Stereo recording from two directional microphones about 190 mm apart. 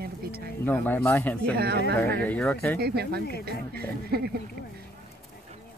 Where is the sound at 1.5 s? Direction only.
55° right (ahead or behind).